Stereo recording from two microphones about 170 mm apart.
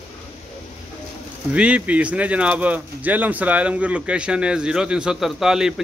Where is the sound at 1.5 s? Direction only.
5° right (ahead or behind).